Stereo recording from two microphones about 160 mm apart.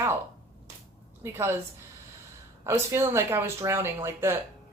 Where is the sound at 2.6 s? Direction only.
15° right (ahead or behind).